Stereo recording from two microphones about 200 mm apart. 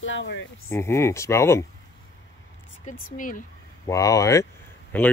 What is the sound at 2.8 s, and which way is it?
Speech, 40° left (ahead or behind).